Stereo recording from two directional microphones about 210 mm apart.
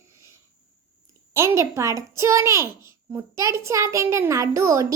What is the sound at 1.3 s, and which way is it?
A child's voice, 15° right (ahead or behind).